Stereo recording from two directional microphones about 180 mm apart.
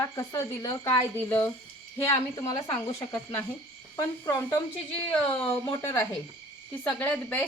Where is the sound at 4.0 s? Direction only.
15° left (ahead or behind).